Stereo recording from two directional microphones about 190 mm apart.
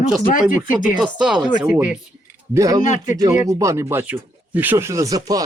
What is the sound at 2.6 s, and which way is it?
Speech, 20° right (ahead or behind).